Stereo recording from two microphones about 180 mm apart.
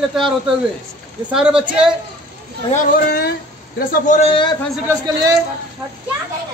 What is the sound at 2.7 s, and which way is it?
Speech, 55° left (ahead or behind).